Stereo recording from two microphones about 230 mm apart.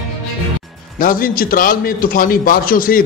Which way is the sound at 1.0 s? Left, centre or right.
Left.